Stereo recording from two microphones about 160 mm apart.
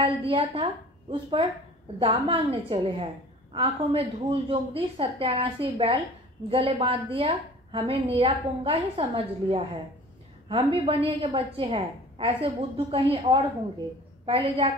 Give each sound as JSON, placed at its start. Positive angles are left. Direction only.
{"t": 0.0, "sound": "a woman's voice", "side_deg": -30}
{"t": 2.0, "sound": "a woman's voice", "side_deg": -35}